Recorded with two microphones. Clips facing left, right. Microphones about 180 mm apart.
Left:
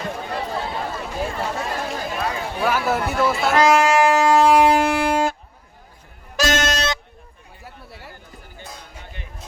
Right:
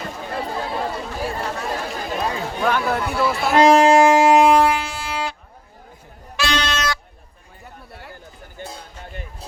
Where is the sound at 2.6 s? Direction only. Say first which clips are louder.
Even; 5° left (ahead or behind).